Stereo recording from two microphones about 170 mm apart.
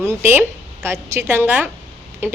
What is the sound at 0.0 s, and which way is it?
Speech, 15° right (ahead or behind).